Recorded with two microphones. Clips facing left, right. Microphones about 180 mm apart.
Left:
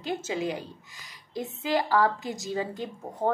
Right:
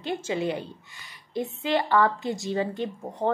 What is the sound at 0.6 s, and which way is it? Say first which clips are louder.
Speech: right 3 dB; 90° left.